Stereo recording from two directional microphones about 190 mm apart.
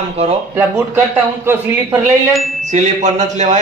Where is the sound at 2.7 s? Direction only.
40° right (ahead or behind).